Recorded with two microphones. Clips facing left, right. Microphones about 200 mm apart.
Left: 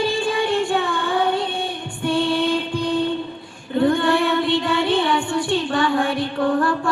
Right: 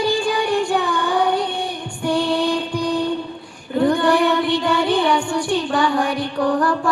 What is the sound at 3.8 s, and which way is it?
Music, 25° left (ahead or behind).